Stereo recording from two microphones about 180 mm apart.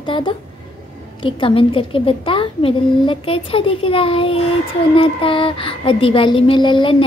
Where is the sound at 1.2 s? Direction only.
30° left (ahead or behind).